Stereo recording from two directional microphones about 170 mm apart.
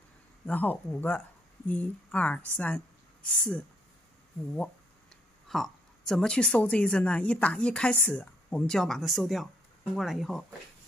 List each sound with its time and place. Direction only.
0.5 s speech: 10° left (ahead or behind)
5.5 s a woman's voice: centre (ahead or behind)